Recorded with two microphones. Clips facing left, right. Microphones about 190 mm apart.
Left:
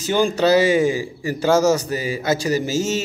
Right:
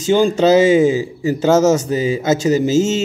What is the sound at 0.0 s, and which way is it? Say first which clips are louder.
Speech: right 5 dB; 20° right (ahead or behind).